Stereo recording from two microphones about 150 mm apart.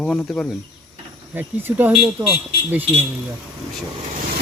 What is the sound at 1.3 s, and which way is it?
Speech, 10° right (ahead or behind).